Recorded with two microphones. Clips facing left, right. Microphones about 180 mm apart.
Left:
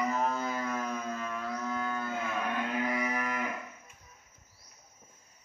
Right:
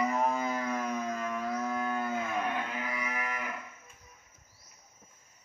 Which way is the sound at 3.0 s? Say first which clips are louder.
Left 4 dB; 40° left (ahead or behind).